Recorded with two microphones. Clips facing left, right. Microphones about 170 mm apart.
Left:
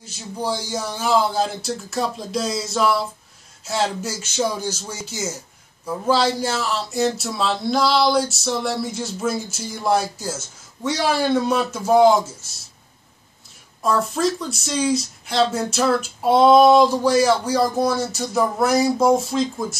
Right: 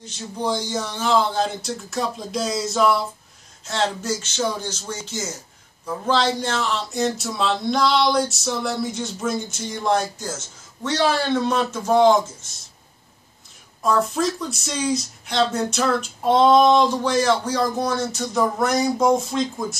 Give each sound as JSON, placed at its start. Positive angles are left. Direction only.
{"t": 0.0, "sound": "speech", "side_deg": 5}
{"t": 13.8, "sound": "speech", "side_deg": 0}